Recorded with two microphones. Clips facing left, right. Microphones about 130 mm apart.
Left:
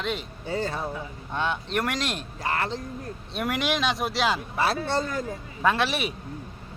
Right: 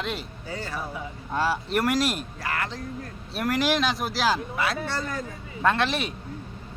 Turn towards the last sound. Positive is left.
turn(degrees=5)  # may be behind; listen again after turning